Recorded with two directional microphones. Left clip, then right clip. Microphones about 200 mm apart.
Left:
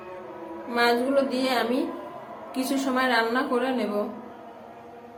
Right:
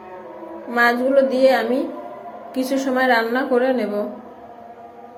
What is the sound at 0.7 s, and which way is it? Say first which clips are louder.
A woman's voice: right 6 dB; 15° right (ahead or behind).